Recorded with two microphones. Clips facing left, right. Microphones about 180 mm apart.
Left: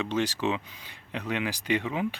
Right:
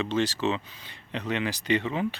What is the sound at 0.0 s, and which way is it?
Speech, 10° left (ahead or behind).